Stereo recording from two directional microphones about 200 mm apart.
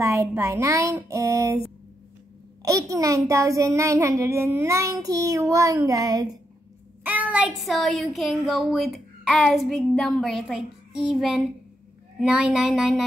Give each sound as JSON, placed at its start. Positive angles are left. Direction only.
{"t": 0.0, "sound": "a child's voice", "side_deg": -15}
{"t": 2.6, "sound": "a child's voice", "side_deg": -15}